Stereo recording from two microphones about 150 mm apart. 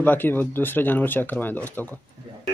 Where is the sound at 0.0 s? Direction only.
15° left (ahead or behind).